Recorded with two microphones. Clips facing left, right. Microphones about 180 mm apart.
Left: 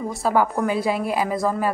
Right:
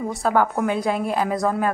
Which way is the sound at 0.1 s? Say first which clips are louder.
Even; 5° left (ahead or behind).